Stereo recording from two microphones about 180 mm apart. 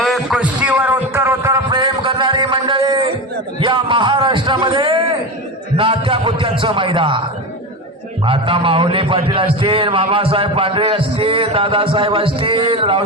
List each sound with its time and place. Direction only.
0.0 s a sound: centre (ahead or behind); by 3.1 s 25° right (ahead or behind)
3.6 s music: 30° right (ahead or behind)
5.7 s a man's voice: 30° right (ahead or behind)
8.2 s a man's voice: 30° right (ahead or behind)